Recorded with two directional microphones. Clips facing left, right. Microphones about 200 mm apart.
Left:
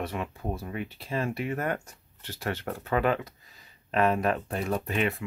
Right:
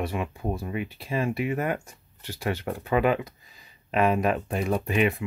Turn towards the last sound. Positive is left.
turn(degrees=-15)  # may be behind; listen again after turning